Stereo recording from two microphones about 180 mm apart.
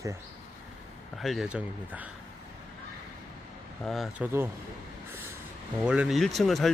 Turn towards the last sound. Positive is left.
turn(degrees=0)  # may be behind; listen again after turning